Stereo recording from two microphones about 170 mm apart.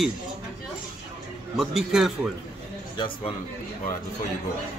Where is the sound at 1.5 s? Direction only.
Centre (ahead or behind).